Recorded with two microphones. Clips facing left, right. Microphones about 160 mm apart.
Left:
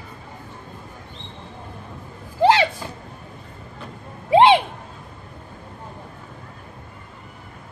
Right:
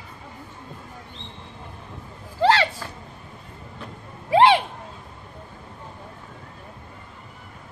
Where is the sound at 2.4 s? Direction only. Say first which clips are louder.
Left 3 dB; 15° left (ahead or behind).